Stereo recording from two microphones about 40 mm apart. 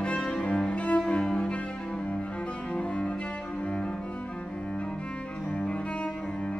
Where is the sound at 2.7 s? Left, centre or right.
Left.